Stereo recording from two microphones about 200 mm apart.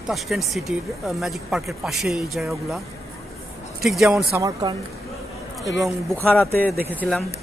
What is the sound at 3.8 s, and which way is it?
Speech, centre (ahead or behind).